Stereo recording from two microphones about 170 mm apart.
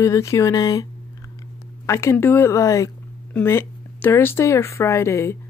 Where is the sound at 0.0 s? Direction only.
15° left (ahead or behind).